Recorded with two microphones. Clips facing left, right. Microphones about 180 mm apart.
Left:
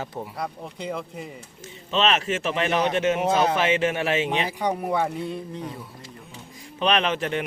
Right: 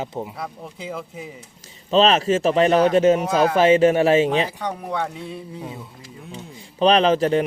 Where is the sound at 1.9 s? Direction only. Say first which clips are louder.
Right 6 dB; 35° right (ahead or behind).